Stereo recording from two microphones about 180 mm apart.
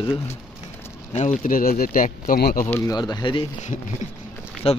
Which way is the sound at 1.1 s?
40° left (ahead or behind).